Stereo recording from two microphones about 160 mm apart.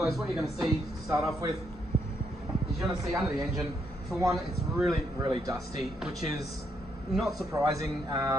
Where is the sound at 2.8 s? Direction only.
Centre (ahead or behind).